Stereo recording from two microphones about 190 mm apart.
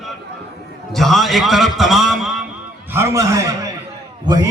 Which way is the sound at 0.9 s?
Centre (ahead or behind).